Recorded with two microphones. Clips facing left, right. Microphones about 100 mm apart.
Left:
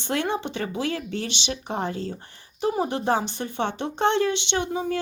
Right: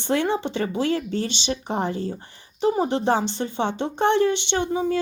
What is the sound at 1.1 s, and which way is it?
Speech, 60° left (ahead or behind).